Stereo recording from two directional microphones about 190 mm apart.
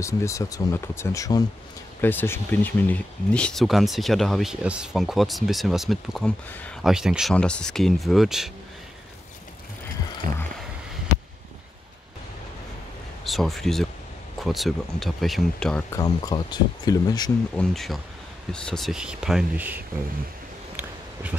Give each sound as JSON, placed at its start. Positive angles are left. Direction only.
{"t": 0.0, "sound": "speech", "side_deg": 15}
{"t": 13.2, "sound": "speech", "side_deg": 0}
{"t": 15.9, "sound": "speech", "side_deg": 20}
{"t": 17.6, "sound": "speech", "side_deg": 0}